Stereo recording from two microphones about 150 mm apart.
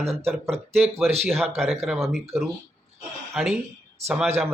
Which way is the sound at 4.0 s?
45° right (ahead or behind).